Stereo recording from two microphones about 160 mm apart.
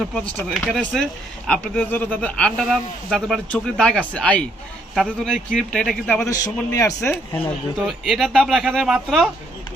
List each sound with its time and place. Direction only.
0.0 s speech: centre (ahead or behind)
6.1 s a man's voice: 15° left (ahead or behind)
7.8 s speech: 5° right (ahead or behind)